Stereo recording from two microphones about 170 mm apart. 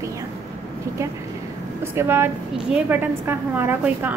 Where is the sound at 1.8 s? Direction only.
15° right (ahead or behind).